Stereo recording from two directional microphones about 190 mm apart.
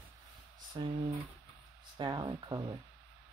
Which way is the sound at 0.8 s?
25° right (ahead or behind).